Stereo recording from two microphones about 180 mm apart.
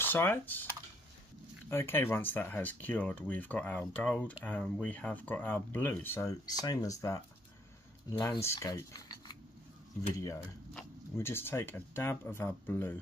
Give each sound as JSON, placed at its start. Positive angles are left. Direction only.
{"t": 0.0, "sound": "speech", "side_deg": 10}
{"t": 1.7, "sound": "speech", "side_deg": 15}